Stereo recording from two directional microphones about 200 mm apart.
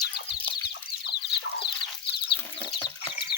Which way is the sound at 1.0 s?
60° left (ahead or behind).